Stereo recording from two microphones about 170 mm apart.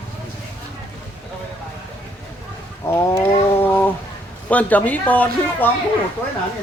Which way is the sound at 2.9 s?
15° left (ahead or behind).